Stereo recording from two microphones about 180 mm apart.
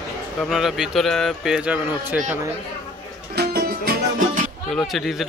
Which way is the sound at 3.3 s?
60° right (ahead or behind).